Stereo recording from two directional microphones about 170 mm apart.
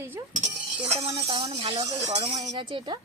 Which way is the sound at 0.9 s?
35° right (ahead or behind).